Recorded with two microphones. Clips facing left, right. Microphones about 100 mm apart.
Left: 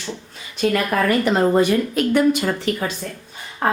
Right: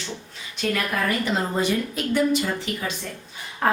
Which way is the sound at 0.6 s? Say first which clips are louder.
Left 6 dB; 50° left (ahead or behind).